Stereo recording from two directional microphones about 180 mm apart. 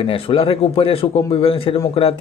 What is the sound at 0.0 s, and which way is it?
Speech, 30° left (ahead or behind).